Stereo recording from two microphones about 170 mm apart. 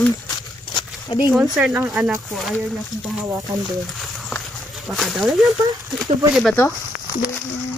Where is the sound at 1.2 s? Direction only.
5° right (ahead or behind).